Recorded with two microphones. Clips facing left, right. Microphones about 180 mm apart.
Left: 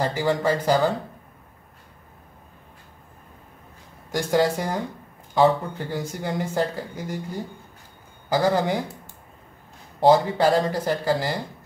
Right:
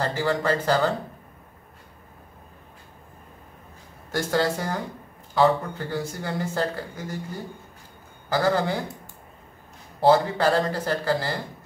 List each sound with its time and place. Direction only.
0.0 s speech: 15° left (ahead or behind)
4.1 s speech: 15° left (ahead or behind)
8.3 s speech: 15° left (ahead or behind)
9.9 s speech: 15° left (ahead or behind)